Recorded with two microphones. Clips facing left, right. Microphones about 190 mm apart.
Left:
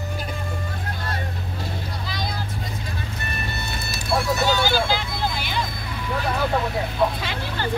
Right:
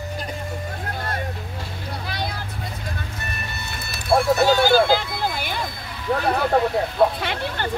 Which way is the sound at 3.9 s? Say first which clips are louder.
Right 5 dB; 55° right (ahead or behind).